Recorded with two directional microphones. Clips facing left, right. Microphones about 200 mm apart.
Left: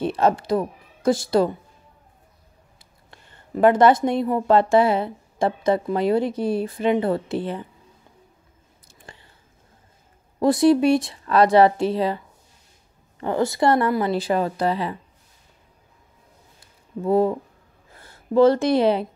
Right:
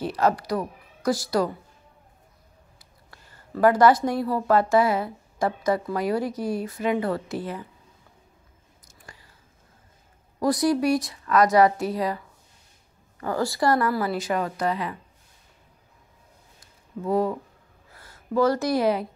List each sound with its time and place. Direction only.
0.0 s speech: 25° left (ahead or behind)
2.8 s speech: 25° left (ahead or behind)
8.8 s a sound: 30° left (ahead or behind)
10.4 s speech: 25° left (ahead or behind)
13.2 s speech: 20° left (ahead or behind)
17.0 s speech: 25° left (ahead or behind)